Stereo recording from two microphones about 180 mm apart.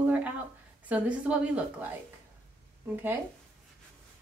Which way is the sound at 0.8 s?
10° right (ahead or behind).